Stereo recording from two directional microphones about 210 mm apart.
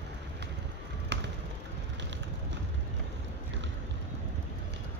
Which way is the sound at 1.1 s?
55° right (ahead or behind).